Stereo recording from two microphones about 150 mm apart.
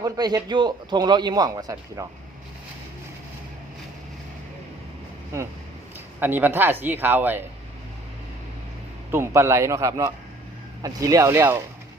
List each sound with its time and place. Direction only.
0.0 s a man's voice: 25° right (ahead or behind)
6.1 s speech: 15° right (ahead or behind)
9.1 s a man's voice: 20° right (ahead or behind)